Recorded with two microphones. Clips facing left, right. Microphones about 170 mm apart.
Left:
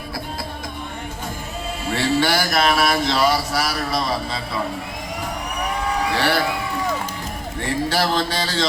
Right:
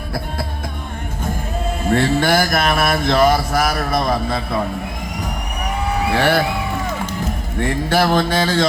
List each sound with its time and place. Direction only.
1.9 s mantra: 50° right (ahead or behind)
6.1 s mantra: 55° right (ahead or behind)
7.9 s mantra: 55° right (ahead or behind)